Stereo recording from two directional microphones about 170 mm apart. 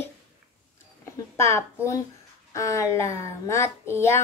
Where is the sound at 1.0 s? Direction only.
15° left (ahead or behind).